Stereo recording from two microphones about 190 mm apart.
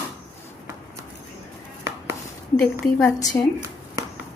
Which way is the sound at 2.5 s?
5° left (ahead or behind).